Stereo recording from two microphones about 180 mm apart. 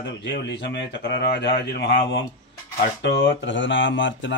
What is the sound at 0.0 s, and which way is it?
Speech, 75° left (ahead or behind).